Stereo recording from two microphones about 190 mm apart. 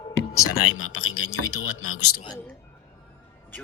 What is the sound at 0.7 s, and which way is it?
Speech, 90° left.